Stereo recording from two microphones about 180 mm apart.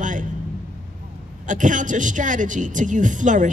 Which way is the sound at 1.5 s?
45° right (ahead or behind).